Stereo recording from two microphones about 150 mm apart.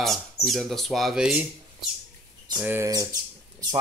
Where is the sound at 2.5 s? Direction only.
15° right (ahead or behind).